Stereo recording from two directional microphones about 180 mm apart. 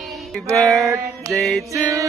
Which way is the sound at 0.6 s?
Centre (ahead or behind).